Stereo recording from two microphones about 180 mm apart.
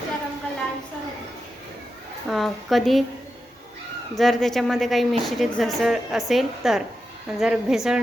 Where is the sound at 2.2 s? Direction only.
Centre (ahead or behind).